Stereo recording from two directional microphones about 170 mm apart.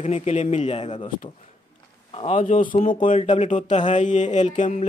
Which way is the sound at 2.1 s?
35° left (ahead or behind).